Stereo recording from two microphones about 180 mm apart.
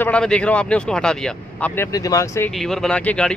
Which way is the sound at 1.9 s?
20° left (ahead or behind).